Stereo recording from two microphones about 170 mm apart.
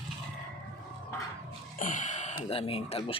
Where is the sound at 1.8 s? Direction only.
50° left (ahead or behind); by 3.1 s 35° left (ahead or behind).